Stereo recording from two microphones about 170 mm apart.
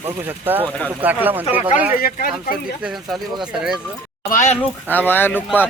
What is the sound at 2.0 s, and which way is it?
Speech, 60° left (ahead or behind).